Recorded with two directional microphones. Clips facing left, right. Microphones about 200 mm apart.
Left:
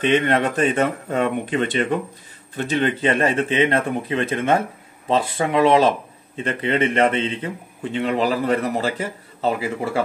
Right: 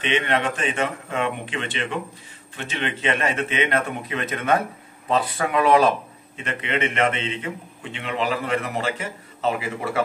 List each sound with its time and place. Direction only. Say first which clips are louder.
0.0 s speech: left 5 dB; 40° left (ahead or behind)